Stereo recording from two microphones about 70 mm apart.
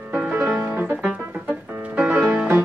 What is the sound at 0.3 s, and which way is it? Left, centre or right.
Music, centre.